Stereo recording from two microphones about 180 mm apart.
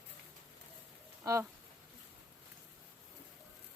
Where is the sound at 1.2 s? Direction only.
20° right (ahead or behind).